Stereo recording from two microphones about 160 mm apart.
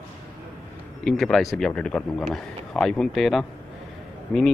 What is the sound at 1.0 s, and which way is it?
A man's voice, 5° left (ahead or behind).